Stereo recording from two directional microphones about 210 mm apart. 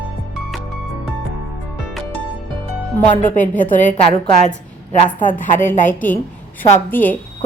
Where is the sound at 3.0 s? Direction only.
40° left (ahead or behind).